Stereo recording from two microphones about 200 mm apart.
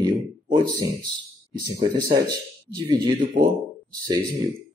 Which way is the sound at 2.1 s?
20° right (ahead or behind).